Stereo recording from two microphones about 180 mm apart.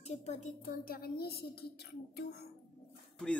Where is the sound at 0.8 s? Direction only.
55° left (ahead or behind).